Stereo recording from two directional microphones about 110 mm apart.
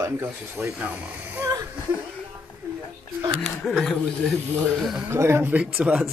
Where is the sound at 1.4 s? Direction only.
30° right (ahead or behind).